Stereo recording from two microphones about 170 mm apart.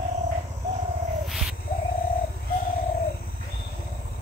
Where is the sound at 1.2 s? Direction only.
Centre (ahead or behind).